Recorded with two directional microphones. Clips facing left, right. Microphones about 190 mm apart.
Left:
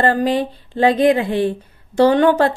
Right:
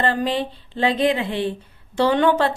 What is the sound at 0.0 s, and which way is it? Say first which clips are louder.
Speech: left 5 dB; 40° left (ahead or behind).